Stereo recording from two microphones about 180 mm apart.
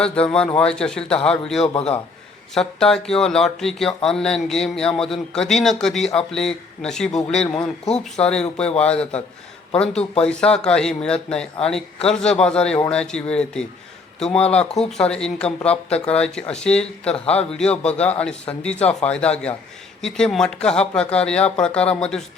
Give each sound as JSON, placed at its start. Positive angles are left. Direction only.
{"t": 0.0, "sound": "speech", "side_deg": 5}
{"t": 1.7, "sound": "speech", "side_deg": 35}
{"t": 2.6, "sound": "a man's voice", "side_deg": 5}
{"t": 14.8, "sound": "a man's voice", "side_deg": 5}
{"t": 18.8, "sound": "speech", "side_deg": 35}
{"t": 19.0, "sound": "a man's voice", "side_deg": 5}